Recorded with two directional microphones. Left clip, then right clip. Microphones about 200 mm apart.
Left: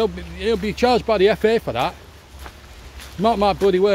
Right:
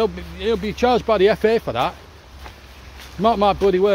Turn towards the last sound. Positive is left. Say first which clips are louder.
# even
turn(degrees=5)  # may be behind; listen again after turning